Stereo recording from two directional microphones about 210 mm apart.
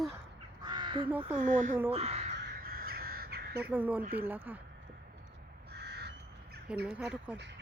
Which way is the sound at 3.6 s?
10° right (ahead or behind).